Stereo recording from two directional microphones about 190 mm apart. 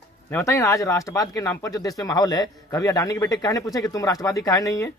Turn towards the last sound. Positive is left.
turn(degrees=15)  # may be behind; listen again after turning